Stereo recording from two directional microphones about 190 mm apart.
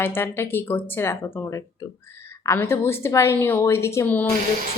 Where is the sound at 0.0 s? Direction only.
10° left (ahead or behind).